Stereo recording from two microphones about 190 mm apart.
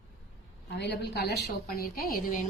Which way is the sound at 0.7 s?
65° left (ahead or behind).